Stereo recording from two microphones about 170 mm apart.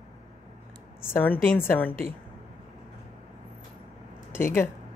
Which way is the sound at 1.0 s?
10° left (ahead or behind).